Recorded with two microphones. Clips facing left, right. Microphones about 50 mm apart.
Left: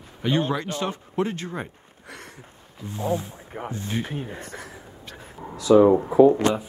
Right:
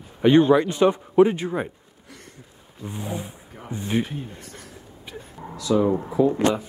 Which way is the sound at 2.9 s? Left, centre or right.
Centre.